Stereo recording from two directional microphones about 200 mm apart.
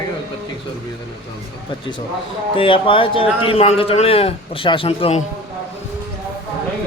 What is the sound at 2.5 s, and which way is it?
A man's voice, 25° left (ahead or behind).